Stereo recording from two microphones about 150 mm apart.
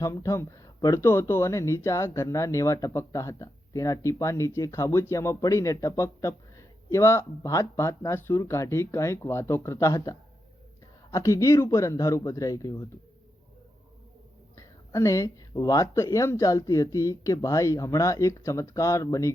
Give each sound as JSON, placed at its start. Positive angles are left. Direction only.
{"t": 0.0, "sound": "speech", "side_deg": 20}
{"t": 14.5, "sound": "speech", "side_deg": 20}